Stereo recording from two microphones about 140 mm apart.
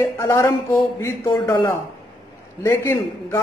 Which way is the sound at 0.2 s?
20° left (ahead or behind).